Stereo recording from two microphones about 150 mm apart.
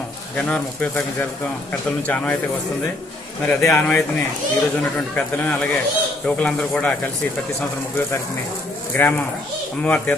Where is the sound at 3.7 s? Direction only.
15° left (ahead or behind).